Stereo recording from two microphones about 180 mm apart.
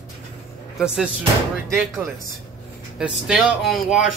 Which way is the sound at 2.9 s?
5° right (ahead or behind).